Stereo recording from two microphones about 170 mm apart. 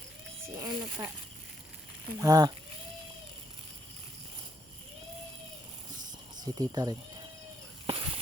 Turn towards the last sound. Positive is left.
turn(degrees=-20)  # may be behind; listen again after turning